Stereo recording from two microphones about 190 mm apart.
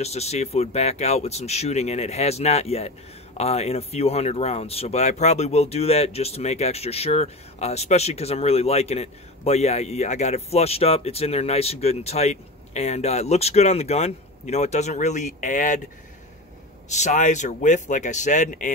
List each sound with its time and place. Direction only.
0.0 s speech: 35° left (ahead or behind)
16.9 s speech: 40° left (ahead or behind)